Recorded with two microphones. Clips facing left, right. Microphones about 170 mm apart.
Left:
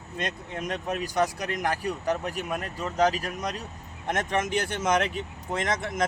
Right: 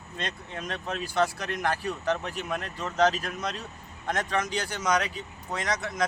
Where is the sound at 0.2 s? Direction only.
15° left (ahead or behind).